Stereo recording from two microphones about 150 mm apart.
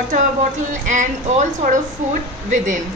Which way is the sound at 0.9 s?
55° right (ahead or behind).